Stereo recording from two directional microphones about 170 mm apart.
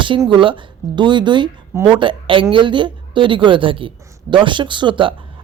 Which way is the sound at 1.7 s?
15° right (ahead or behind).